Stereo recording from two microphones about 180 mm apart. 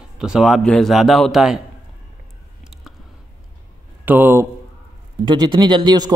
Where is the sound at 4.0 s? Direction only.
10° right (ahead or behind).